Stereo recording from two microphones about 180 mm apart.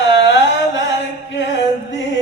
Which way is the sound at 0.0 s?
90° left.